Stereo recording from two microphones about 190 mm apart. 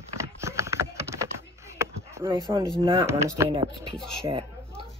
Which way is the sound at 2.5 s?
25° right (ahead or behind).